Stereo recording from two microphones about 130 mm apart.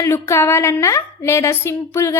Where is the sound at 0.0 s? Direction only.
20° left (ahead or behind).